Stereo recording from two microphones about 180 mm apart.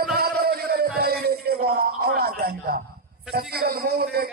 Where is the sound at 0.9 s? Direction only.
60° right (ahead or behind).